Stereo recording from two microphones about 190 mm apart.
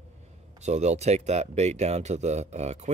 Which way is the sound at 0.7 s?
35° right (ahead or behind).